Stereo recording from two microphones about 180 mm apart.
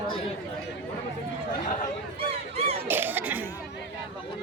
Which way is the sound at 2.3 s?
35° right (ahead or behind).